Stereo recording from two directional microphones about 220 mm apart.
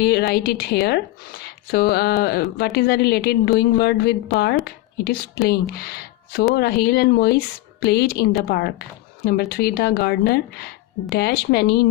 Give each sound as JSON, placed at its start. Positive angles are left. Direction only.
{"t": 0.0, "sound": "a woman's voice", "side_deg": 45}